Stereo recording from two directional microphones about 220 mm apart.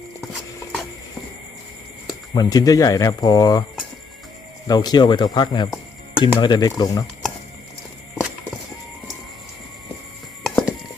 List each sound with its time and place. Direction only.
2.0 s speech: 15° left (ahead or behind)
4.7 s speech: 20° left (ahead or behind)
10.4 s a sound: centre (ahead or behind)